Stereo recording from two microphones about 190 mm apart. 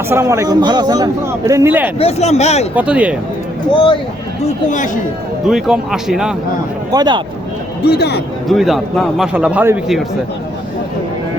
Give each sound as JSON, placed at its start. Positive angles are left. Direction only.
{"t": 0.1, "sound": "a man's voice", "side_deg": -15}
{"t": 2.0, "sound": "speech", "side_deg": 35}
{"t": 2.7, "sound": "a man's voice", "side_deg": -5}
{"t": 4.4, "sound": "speech", "side_deg": 40}
{"t": 5.5, "sound": "a man's voice", "side_deg": 0}
{"t": 6.9, "sound": "speech", "side_deg": -20}
{"t": 7.8, "sound": "speech", "side_deg": 60}
{"t": 8.4, "sound": "a man's voice", "side_deg": 0}